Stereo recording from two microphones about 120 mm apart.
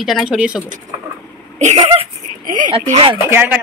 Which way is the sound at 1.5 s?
75° right (ahead or behind).